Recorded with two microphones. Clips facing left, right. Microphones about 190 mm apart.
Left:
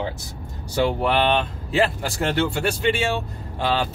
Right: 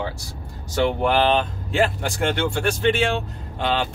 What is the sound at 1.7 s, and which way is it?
Speech, 5° left (ahead or behind).